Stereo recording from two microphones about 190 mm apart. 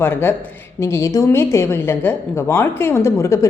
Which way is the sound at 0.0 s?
10° left (ahead or behind).